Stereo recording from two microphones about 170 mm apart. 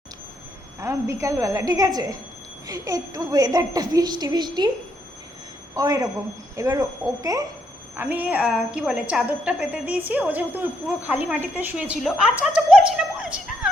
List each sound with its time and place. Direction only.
0.8 s a woman's voice: 15° right (ahead or behind)
5.7 s a woman's voice: 20° right (ahead or behind)
7.9 s a woman's voice: 10° right (ahead or behind)